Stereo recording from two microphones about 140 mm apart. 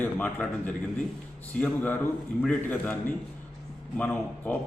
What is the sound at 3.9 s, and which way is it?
Speech, 10° left (ahead or behind).